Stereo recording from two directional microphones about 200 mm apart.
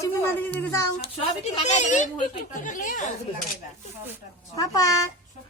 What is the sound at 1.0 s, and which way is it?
Speech, 35° left (ahead or behind).